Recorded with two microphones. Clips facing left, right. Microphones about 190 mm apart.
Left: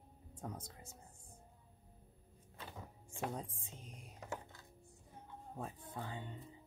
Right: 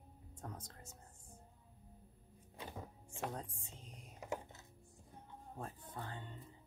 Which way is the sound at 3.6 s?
10° left (ahead or behind).